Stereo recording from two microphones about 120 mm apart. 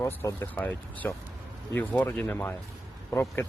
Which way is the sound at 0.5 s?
10° left (ahead or behind).